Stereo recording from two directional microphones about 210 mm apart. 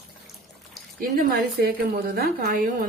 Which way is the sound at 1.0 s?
45° right (ahead or behind).